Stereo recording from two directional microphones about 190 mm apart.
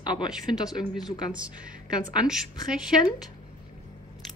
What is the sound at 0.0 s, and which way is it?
Speech, 25° left (ahead or behind).